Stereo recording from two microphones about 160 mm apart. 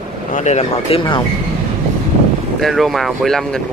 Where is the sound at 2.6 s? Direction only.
Centre (ahead or behind).